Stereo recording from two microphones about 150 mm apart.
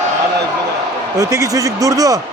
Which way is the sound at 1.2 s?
20° right (ahead or behind).